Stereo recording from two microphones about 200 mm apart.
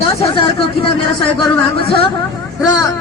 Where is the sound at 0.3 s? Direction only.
25° left (ahead or behind).